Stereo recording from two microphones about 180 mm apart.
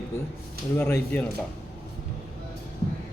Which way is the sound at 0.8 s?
10° left (ahead or behind).